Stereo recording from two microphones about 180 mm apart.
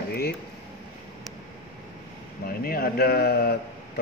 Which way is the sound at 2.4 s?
55° left (ahead or behind).